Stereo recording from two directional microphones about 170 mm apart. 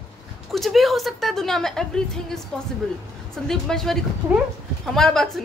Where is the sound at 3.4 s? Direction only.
5° left (ahead or behind).